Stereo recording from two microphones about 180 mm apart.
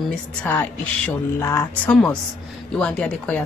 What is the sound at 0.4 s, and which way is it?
A woman's voice, 10° left (ahead or behind).